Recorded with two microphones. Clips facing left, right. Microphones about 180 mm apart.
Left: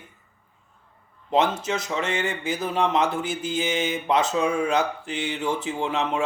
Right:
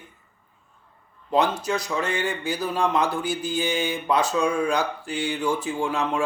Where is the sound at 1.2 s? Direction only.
25° left (ahead or behind).